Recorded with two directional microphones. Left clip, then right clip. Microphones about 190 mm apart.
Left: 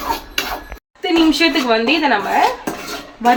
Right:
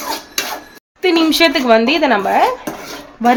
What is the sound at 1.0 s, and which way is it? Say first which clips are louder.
Speech: right 2 dB; 65° right (ahead or behind).